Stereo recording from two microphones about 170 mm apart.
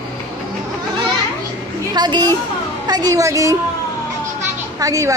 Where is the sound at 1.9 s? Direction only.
25° right (ahead or behind).